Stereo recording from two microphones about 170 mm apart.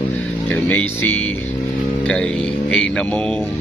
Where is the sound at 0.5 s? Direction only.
10° left (ahead or behind).